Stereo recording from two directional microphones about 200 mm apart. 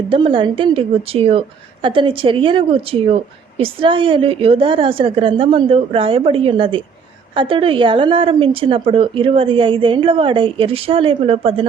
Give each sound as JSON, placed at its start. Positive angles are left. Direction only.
{"t": 0.1, "sound": "a woman's voice", "side_deg": -25}